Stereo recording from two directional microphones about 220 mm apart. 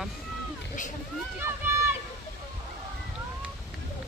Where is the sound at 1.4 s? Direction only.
10° right (ahead or behind).